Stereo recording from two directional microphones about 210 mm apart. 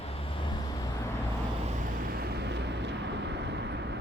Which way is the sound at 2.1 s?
50° right (ahead or behind).